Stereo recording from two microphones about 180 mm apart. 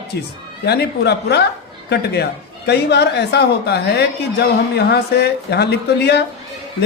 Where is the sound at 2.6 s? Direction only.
65° left (ahead or behind).